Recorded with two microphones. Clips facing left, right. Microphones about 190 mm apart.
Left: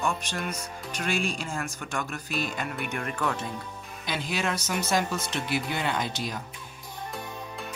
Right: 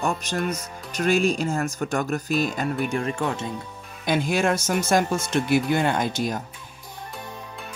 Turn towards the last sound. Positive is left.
turn(degrees=-45)  # may be behind; listen again after turning